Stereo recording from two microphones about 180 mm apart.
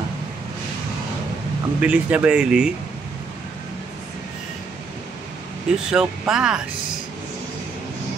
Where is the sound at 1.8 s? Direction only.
10° right (ahead or behind).